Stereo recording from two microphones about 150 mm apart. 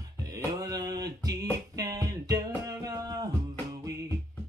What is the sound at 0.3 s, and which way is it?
Music, 25° right (ahead or behind).